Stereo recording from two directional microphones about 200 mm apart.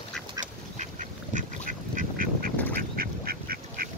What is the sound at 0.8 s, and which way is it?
Duck, 40° right (ahead or behind).